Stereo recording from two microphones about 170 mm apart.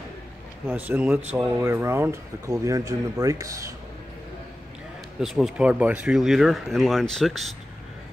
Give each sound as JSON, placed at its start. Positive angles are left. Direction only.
{"t": 0.7, "sound": "speech", "side_deg": -10}
{"t": 5.2, "sound": "speech", "side_deg": 0}